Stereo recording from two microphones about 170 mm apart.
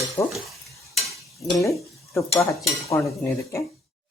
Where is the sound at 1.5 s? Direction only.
20° left (ahead or behind).